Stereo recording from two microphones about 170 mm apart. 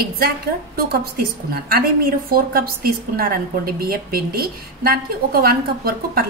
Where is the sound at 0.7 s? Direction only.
65° right (ahead or behind).